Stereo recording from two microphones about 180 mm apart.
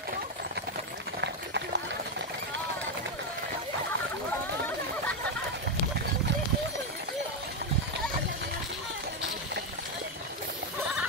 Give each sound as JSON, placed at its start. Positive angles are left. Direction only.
{"t": 1.2, "sound": "run", "side_deg": -75}